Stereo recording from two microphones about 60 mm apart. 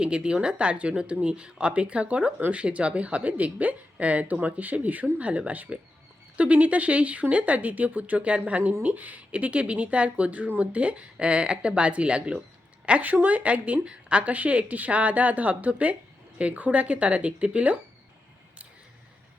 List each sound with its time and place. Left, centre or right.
0.0 s a woman's voice: centre